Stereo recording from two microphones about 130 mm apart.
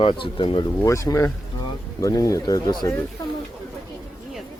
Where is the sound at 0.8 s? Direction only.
25° left (ahead or behind).